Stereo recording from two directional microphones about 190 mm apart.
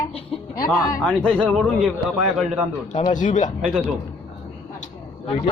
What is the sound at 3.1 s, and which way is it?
Speech, 40° left (ahead or behind).